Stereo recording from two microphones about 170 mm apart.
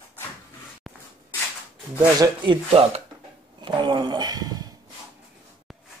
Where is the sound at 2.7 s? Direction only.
35° right (ahead or behind).